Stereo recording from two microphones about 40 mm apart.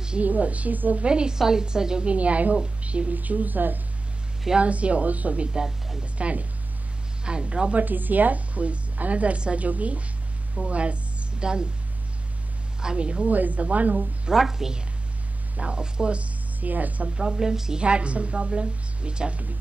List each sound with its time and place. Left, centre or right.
0.2 s a woman's voice: right
1.0 s a woman's voice: right
2.0 s a woman's voice: right
3.2 s a woman's voice: right
4.6 s a woman's voice: right
7.7 s a woman's voice: right
12.8 s a woman's voice: right
13.3 s a woman's voice: right
14.3 s a woman's voice: centre
15.5 s a woman's voice: right
16.5 s a woman's voice: right
17.3 s a woman's voice: centre
17.8 s a woman's voice: right